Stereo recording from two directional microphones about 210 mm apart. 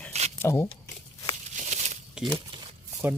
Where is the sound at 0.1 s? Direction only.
30° right (ahead or behind).